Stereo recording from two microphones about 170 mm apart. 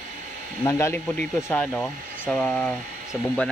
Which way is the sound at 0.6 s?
15° left (ahead or behind).